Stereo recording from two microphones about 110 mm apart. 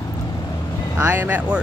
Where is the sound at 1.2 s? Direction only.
15° right (ahead or behind).